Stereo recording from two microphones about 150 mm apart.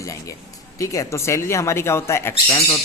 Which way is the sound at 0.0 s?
20° left (ahead or behind).